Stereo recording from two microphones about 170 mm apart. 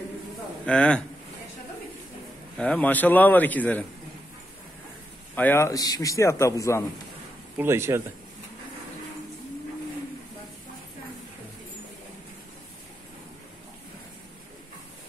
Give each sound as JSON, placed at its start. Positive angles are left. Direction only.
{"t": 0.7, "sound": "a man's voice", "side_deg": 5}
{"t": 2.5, "sound": "a man's voice", "side_deg": 5}
{"t": 5.3, "sound": "a man's voice", "side_deg": 10}
{"t": 7.5, "sound": "speech", "side_deg": -15}